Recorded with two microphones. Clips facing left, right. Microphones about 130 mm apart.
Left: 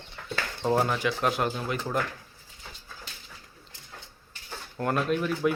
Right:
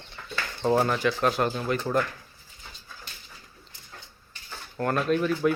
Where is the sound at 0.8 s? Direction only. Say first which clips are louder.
Right 2 dB; centre (ahead or behind).